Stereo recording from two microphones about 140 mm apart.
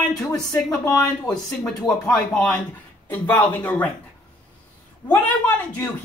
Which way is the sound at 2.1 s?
5° left (ahead or behind).